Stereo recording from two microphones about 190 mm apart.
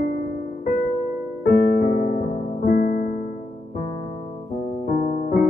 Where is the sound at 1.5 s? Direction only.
50° left (ahead or behind).